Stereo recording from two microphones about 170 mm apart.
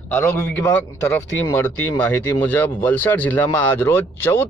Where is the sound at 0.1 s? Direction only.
15° left (ahead or behind).